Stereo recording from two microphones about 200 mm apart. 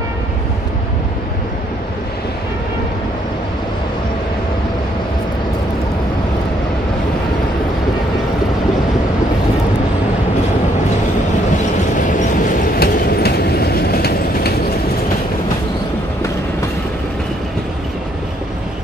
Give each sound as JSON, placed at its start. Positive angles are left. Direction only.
{"t": 12.7, "sound": "train", "side_deg": 50}